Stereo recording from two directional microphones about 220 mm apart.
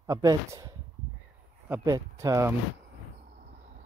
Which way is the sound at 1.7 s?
15° right (ahead or behind).